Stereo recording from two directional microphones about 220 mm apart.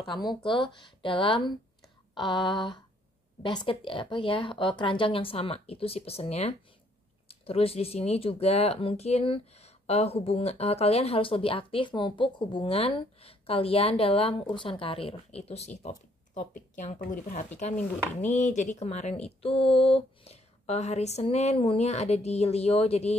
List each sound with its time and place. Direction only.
0.0 s speech: centre (ahead or behind)
0.4 s speech: 20° left (ahead or behind)